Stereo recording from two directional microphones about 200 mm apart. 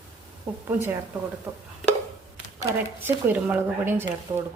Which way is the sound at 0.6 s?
10° right (ahead or behind).